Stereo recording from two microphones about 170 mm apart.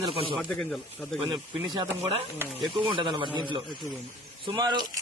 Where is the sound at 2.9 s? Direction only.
30° right (ahead or behind).